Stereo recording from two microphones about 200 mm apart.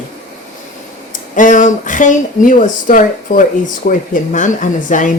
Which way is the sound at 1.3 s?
40° left (ahead or behind).